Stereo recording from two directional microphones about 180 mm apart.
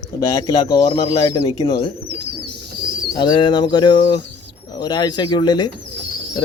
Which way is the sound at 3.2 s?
25° left (ahead or behind).